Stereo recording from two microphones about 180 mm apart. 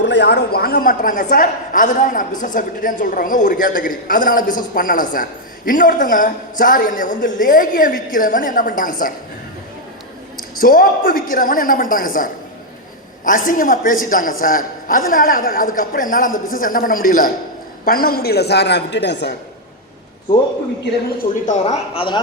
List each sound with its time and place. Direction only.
0.0 s a woman's voice: 70° left (ahead or behind); by 9.1 s 50° left (ahead or behind)
10.3 s a woman's voice: 50° left (ahead or behind); by 19.3 s 75° left (ahead or behind)
21.2 s speech: 45° left (ahead or behind)